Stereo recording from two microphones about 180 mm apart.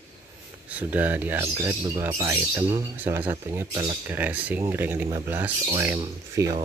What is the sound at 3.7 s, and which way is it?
Speech, 25° right (ahead or behind).